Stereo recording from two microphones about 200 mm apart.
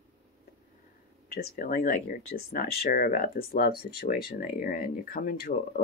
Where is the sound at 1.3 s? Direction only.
50° left (ahead or behind).